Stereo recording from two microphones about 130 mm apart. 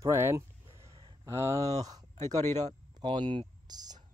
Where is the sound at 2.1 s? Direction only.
60° right (ahead or behind).